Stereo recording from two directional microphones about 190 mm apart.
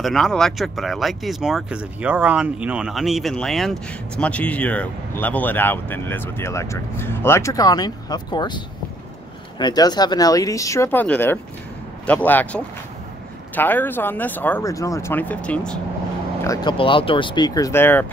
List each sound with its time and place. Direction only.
0.0 s speech: centre (ahead or behind)
16.4 s speech: 25° left (ahead or behind)